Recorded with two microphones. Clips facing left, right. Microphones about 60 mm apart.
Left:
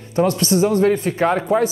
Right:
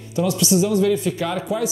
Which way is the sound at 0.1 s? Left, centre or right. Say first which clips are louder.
Left 2 dB; left.